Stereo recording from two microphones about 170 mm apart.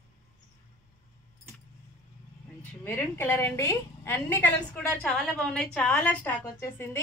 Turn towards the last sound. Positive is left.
turn(degrees=15)  # may be behind; listen again after turning